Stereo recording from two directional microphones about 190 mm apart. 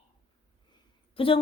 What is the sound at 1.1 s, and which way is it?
Speech, 30° left (ahead or behind).